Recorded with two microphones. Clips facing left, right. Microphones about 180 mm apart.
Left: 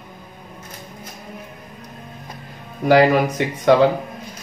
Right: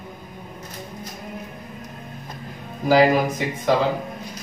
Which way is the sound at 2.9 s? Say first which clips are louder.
Left 2 dB; 65° left (ahead or behind).